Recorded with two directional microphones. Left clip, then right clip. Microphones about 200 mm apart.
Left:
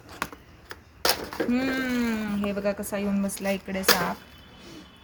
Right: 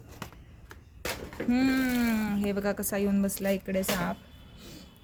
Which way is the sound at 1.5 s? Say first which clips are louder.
Right 2 dB; 60° right (ahead or behind).